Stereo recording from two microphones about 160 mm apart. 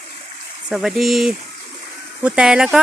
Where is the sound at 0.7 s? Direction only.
Centre (ahead or behind).